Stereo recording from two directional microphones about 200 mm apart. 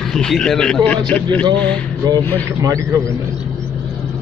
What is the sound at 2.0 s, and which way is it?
Speech, 20° right (ahead or behind).